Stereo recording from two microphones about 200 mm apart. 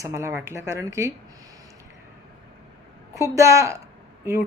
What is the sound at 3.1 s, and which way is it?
Speech, 15° right (ahead or behind).